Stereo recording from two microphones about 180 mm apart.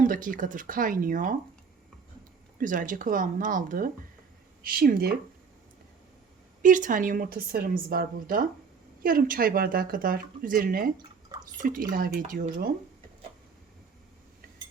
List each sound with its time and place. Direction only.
0.0 s a woman's voice: 50° right (ahead or behind)
2.6 s a woman's voice: 50° right (ahead or behind)
6.6 s a woman's voice: 45° right (ahead or behind)